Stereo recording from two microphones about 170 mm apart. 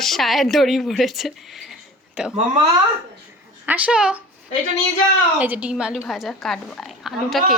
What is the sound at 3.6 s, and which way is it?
Speech, 10° right (ahead or behind).